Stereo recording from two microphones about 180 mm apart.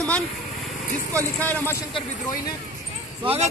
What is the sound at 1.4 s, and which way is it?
Speech, 10° left (ahead or behind).